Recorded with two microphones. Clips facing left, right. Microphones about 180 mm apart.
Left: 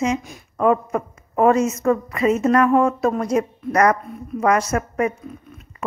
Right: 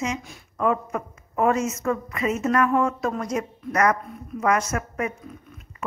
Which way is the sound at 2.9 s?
30° left (ahead or behind).